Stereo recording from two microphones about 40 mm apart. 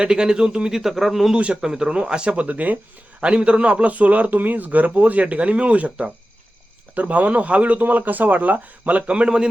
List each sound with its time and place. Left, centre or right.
0.0 s speech: right
0.8 s speech: centre
1.6 s speech: centre
2.3 s a man's voice: right
3.2 s a man's voice: right
9.0 s speech: right